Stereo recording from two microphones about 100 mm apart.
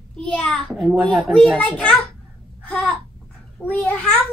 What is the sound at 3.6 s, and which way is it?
Speech, 30° left (ahead or behind).